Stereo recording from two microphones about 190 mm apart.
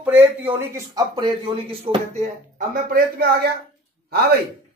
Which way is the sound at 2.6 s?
50° right (ahead or behind).